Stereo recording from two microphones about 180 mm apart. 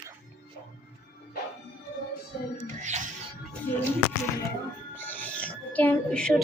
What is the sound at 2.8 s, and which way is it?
Music, 40° right (ahead or behind).